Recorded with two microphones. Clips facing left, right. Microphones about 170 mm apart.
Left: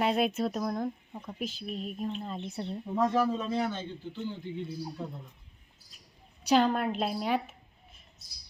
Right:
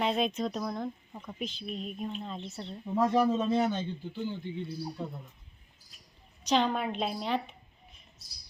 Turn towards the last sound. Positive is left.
turn(degrees=5)  # may be behind; listen again after turning